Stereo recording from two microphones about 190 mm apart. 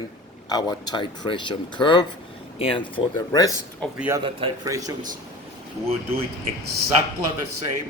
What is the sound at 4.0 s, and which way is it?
Speech, 15° right (ahead or behind).